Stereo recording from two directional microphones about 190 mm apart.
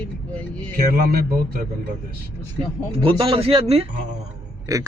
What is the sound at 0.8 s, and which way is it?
Speech, 50° right (ahead or behind).